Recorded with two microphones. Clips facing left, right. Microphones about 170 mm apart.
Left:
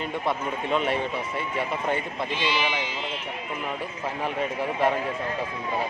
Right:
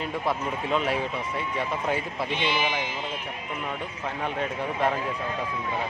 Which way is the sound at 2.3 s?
55° right (ahead or behind).